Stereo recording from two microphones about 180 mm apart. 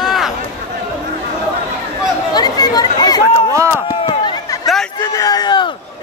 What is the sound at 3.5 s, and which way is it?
Chop, 15° right (ahead or behind).